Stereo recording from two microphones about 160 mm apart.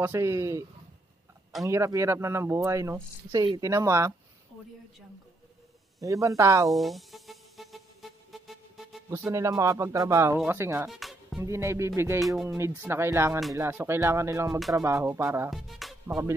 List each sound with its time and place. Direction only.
0.0 s speech: 20° right (ahead or behind)
1.7 s speech: 20° right (ahead or behind)
5.9 s speech: 20° right (ahead or behind)
6.7 s music: centre (ahead or behind)
9.1 s speech: 15° right (ahead or behind)
10.9 s music: centre (ahead or behind)
11.4 s speech: 15° right (ahead or behind)
12.2 s speech: centre (ahead or behind)
12.4 s speech: 15° right (ahead or behind)
15.5 s music: centre (ahead or behind)